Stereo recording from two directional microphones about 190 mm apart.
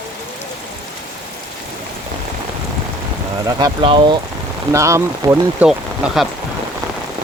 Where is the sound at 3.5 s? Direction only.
20° right (ahead or behind).